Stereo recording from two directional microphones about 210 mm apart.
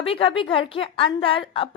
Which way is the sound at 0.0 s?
25° left (ahead or behind).